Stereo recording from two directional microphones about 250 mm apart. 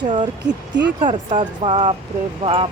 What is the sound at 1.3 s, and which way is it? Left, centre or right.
Speech, right.